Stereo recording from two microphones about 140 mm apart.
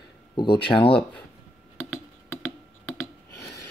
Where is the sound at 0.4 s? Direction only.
35° left (ahead or behind).